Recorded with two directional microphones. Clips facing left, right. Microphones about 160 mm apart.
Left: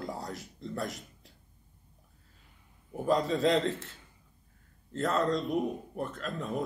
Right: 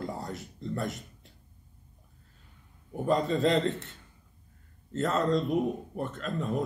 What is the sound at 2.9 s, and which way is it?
A man's voice, centre (ahead or behind).